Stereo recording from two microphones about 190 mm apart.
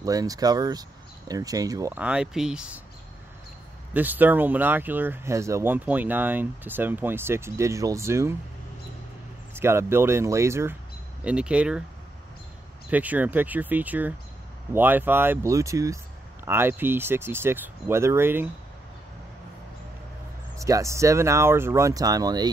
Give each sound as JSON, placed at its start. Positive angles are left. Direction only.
{"t": 0.0, "sound": "speech", "side_deg": -20}
{"t": 3.9, "sound": "speech", "side_deg": -10}
{"t": 9.5, "sound": "speech", "side_deg": -15}
{"t": 12.9, "sound": "speech", "side_deg": -10}
{"t": 20.5, "sound": "speech", "side_deg": -15}